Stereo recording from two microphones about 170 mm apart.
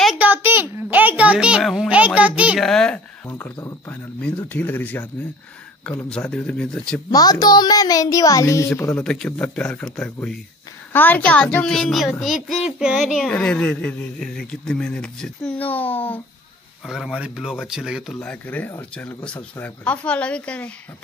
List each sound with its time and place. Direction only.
0.0 s a sound: 5° right (ahead or behind)
3.3 s a child's voice: 10° left (ahead or behind)
4.2 s a child's voice: 5° left (ahead or behind)
7.1 s a child's voice: 25° left (ahead or behind)
16.8 s a child's voice: centre (ahead or behind)